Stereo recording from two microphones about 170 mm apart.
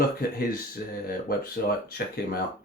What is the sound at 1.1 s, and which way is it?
Speech, 60° left (ahead or behind).